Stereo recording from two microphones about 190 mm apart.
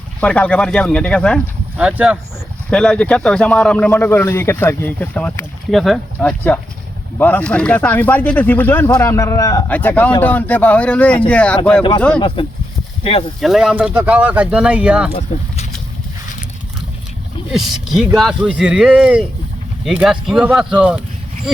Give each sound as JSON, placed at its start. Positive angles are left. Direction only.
{"t": 0.2, "sound": "speech", "side_deg": 5}
{"t": 1.8, "sound": "speech", "side_deg": -5}
{"t": 2.6, "sound": "a man's voice", "side_deg": 5}
{"t": 13.0, "sound": "speech", "side_deg": 30}
{"t": 13.4, "sound": "speech", "side_deg": 0}
{"t": 17.5, "sound": "speech", "side_deg": 0}